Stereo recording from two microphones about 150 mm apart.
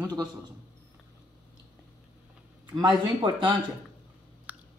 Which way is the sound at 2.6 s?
30° right (ahead or behind).